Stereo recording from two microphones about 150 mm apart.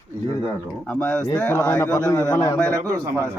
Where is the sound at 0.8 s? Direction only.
10° left (ahead or behind).